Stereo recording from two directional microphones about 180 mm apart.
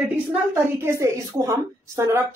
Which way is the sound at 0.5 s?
15° right (ahead or behind).